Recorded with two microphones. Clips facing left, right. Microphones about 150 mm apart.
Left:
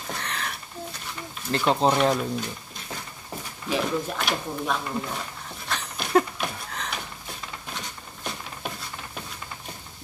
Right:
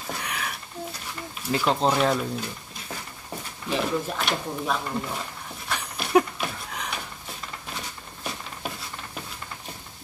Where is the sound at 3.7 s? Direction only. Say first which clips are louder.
Even; centre (ahead or behind).